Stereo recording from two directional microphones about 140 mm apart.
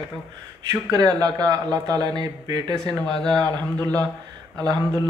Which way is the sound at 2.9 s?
5° left (ahead or behind).